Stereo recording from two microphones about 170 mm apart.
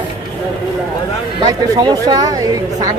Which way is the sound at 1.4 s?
25° right (ahead or behind).